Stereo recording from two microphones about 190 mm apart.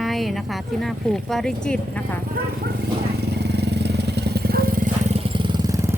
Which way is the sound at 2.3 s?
55° right (ahead or behind).